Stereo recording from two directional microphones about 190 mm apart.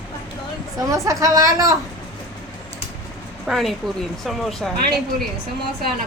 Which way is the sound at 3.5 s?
Centre (ahead or behind).